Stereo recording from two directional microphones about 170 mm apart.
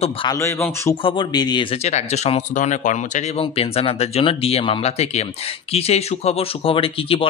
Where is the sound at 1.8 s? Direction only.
40° left (ahead or behind).